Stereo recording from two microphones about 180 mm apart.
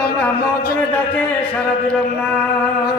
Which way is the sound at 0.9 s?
10° left (ahead or behind).